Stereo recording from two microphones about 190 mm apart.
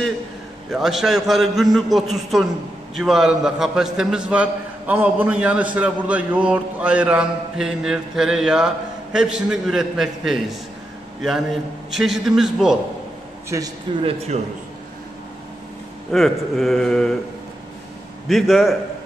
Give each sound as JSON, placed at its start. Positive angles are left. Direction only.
{"t": 0.7, "sound": "a man's voice", "side_deg": 0}
{"t": 11.9, "sound": "a man's voice", "side_deg": 0}
{"t": 13.9, "sound": "speech", "side_deg": -25}
{"t": 16.1, "sound": "a man's voice", "side_deg": 0}
{"t": 18.3, "sound": "a man's voice", "side_deg": 0}